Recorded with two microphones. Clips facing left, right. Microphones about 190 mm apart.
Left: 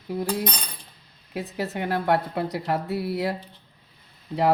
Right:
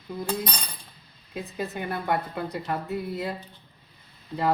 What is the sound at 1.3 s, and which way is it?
A woman's voice, 75° left (ahead or behind).